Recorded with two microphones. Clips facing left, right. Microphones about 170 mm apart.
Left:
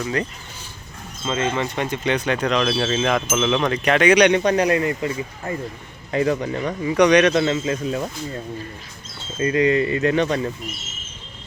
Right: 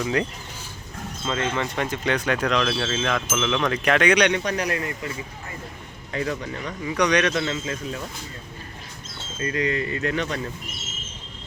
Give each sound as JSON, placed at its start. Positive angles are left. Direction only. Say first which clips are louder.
{"t": 0.0, "sound": "speech", "louder": "even", "side_deg": -5}
{"t": 1.2, "sound": "speech", "louder": "left 3 dB", "side_deg": 5}
{"t": 2.6, "sound": "wind chime", "louder": "left 4 dB", "side_deg": 15}
{"t": 3.6, "sound": "speech", "louder": "left 3 dB", "side_deg": 5}
{"t": 4.2, "sound": "speech", "louder": "left 6 dB", "side_deg": 25}
{"t": 9.4, "sound": "speech", "louder": "left 7 dB", "side_deg": 20}